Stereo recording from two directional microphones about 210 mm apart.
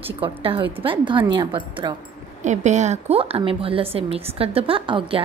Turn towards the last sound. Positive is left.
turn(degrees=-25)  # may be behind; listen again after turning